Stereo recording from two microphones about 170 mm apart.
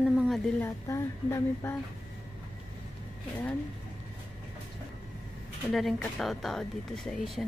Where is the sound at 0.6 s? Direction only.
15° left (ahead or behind).